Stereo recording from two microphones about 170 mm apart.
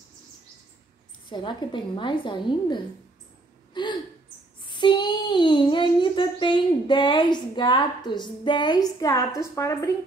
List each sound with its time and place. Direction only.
1.3 s a woman's voice: 25° left (ahead or behind)